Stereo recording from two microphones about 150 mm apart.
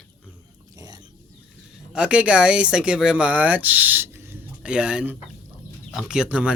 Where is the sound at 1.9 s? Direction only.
5° right (ahead or behind).